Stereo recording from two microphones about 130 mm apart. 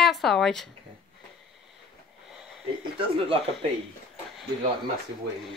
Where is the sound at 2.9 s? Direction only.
45° right (ahead or behind).